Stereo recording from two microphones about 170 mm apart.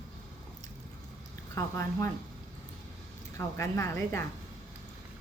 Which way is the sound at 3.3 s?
15° left (ahead or behind).